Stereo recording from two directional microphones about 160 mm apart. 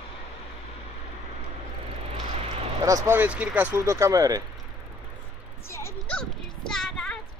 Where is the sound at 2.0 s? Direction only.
40° right (ahead or behind).